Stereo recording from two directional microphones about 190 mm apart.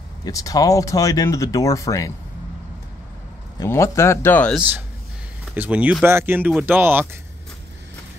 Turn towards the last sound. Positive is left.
turn(degrees=-10)  # may be behind; listen again after turning